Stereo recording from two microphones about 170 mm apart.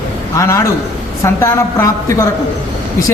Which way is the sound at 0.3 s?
15° left (ahead or behind).